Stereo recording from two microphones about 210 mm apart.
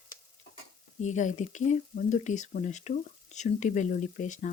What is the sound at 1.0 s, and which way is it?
Speech, 35° left (ahead or behind).